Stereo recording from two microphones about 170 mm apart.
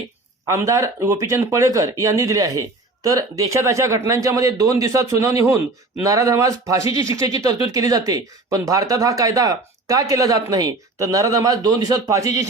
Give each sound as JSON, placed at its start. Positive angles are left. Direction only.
{"t": 0.4, "sound": "speech", "side_deg": -20}